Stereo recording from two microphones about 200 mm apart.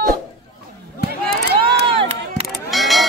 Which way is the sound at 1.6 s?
30° right (ahead or behind).